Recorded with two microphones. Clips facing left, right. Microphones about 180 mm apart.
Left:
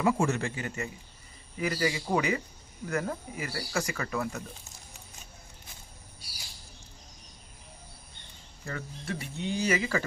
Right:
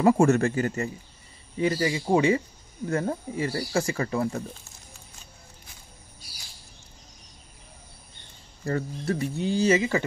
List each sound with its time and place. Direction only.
0.0 s a man's voice: 45° right (ahead or behind)
1.6 s speech: 25° right (ahead or behind)
8.6 s speech: 40° right (ahead or behind)